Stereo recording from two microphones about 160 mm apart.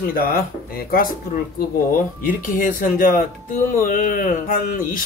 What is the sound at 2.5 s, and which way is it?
Speech, 55° left (ahead or behind).